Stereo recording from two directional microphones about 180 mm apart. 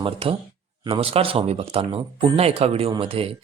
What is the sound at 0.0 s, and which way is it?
Speech, 30° right (ahead or behind).